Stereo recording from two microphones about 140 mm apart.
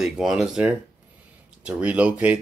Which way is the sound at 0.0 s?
5° right (ahead or behind).